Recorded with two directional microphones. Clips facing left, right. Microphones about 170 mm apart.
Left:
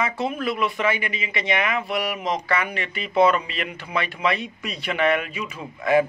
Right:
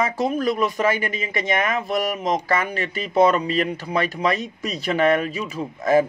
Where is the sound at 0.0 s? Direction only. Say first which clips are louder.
Right 4 dB; 40° right (ahead or behind).